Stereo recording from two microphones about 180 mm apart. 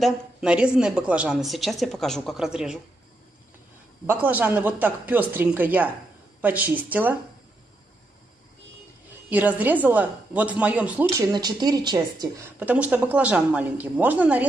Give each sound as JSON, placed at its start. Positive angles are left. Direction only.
{"t": 0.0, "sound": "a woman's voice", "side_deg": -5}
{"t": 4.0, "sound": "speech", "side_deg": -10}
{"t": 9.3, "sound": "speech", "side_deg": -10}
{"t": 11.3, "sound": "speech", "side_deg": -20}
{"t": 12.5, "sound": "speech", "side_deg": -10}